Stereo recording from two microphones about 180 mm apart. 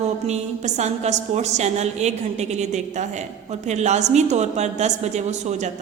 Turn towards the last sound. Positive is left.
turn(degrees=-40)  # may be behind; listen again after turning